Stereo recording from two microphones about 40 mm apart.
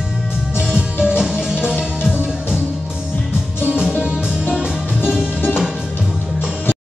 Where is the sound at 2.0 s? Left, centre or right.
Left.